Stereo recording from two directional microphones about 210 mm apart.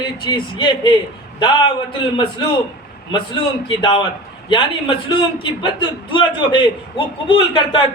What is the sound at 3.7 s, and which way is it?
Speech, 20° left (ahead or behind).